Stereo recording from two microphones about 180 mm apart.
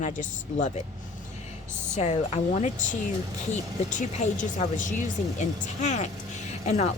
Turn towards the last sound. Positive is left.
turn(degrees=40)  # may be behind; listen again after turning